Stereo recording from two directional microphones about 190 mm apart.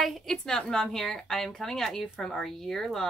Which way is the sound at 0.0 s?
Centre (ahead or behind).